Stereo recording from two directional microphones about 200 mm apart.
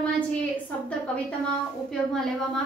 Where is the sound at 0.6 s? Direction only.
5° left (ahead or behind).